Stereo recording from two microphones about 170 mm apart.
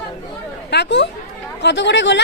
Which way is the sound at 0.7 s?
85° left.